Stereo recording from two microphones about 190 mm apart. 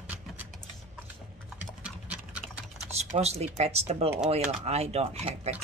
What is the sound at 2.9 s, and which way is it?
Speech, 35° right (ahead or behind).